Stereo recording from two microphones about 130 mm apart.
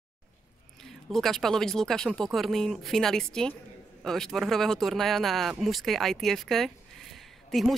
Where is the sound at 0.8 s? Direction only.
Centre (ahead or behind).